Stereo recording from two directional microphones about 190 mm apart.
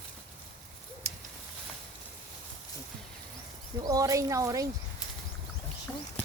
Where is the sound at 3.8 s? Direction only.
15° right (ahead or behind).